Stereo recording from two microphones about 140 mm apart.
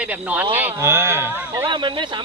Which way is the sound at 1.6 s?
35° right (ahead or behind).